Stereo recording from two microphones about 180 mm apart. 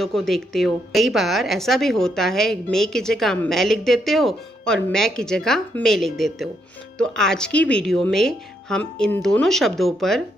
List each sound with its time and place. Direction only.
0.0 s a woman's voice: centre (ahead or behind)